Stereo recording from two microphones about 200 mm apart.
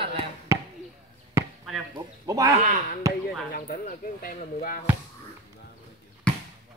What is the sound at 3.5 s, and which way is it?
Speech, 45° left (ahead or behind).